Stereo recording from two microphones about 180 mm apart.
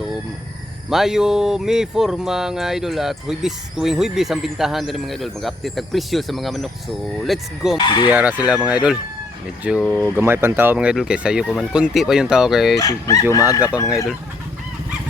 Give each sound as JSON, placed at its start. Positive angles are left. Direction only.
{"t": 0.9, "sound": "speech", "side_deg": 0}
{"t": 7.8, "sound": "speech", "side_deg": 25}
{"t": 8.1, "sound": "speech", "side_deg": -10}
{"t": 9.8, "sound": "speech", "side_deg": 10}
{"t": 10.2, "sound": "speech", "side_deg": -15}
{"t": 12.7, "sound": "speech", "side_deg": 20}
{"t": 13.8, "sound": "speech", "side_deg": 0}